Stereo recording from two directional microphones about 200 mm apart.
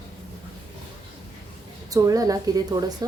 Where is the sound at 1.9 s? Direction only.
15° right (ahead or behind).